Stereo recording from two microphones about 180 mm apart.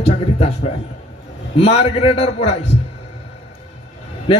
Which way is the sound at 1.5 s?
30° left (ahead or behind).